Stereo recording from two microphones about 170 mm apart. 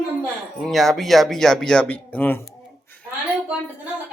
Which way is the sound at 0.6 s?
Centre (ahead or behind).